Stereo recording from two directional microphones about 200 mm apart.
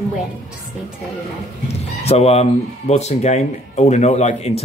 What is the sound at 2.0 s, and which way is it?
Speech, 30° left (ahead or behind).